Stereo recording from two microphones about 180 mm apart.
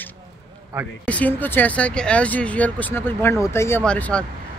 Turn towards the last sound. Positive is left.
turn(degrees=5)  # may be behind; listen again after turning